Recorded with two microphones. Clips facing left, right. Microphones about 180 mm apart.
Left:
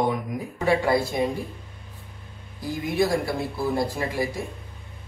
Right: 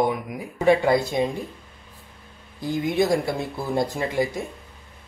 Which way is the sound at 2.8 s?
20° right (ahead or behind).